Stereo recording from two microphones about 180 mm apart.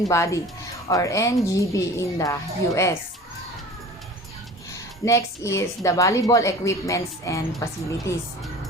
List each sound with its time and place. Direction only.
0.1 s a woman's voice: 15° left (ahead or behind)
4.7 s a woman's voice: 15° left (ahead or behind)